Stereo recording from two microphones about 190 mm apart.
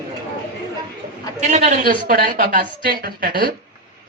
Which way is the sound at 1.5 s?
40° right (ahead or behind).